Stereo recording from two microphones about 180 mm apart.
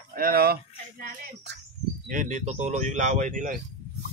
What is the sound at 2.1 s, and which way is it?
Speech, 45° right (ahead or behind).